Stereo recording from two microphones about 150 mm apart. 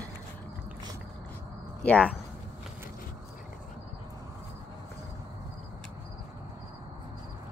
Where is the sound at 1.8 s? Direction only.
10° left (ahead or behind).